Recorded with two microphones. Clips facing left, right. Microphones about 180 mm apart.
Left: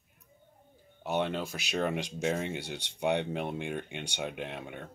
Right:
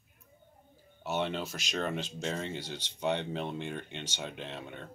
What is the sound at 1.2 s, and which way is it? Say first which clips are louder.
Speech: left 1 dB; 50° left (ahead or behind).